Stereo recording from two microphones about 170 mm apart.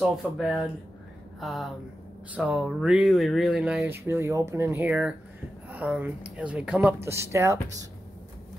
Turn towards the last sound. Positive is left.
turn(degrees=-15)  # may be behind; listen again after turning